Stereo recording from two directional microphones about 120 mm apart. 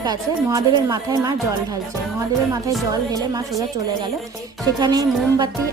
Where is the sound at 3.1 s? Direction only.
30° right (ahead or behind).